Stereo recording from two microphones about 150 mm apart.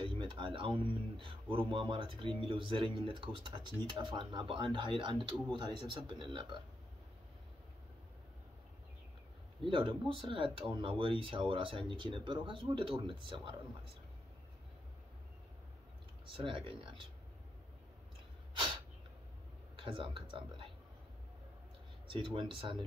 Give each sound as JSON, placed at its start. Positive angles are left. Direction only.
{"t": 0.0, "sound": "speech", "side_deg": -35}
{"t": 9.6, "sound": "speech", "side_deg": -35}
{"t": 16.3, "sound": "speech", "side_deg": -35}
{"t": 19.8, "sound": "speech", "side_deg": -35}
{"t": 22.1, "sound": "speech", "side_deg": -35}